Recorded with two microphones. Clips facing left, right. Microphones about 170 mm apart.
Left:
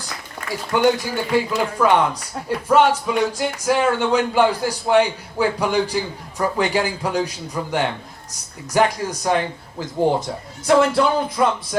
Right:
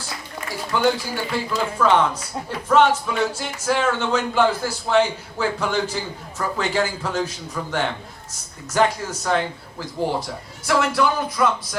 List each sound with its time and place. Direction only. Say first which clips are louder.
0.7 s speech: left 3 dB; 15° left (ahead or behind)